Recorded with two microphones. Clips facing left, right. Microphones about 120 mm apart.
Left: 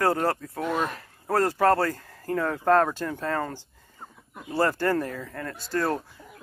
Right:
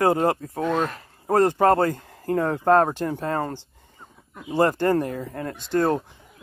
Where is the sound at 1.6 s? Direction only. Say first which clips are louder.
Right 3 dB; 20° right (ahead or behind).